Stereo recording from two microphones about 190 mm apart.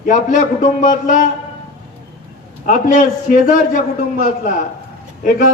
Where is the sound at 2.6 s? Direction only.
45° left (ahead or behind).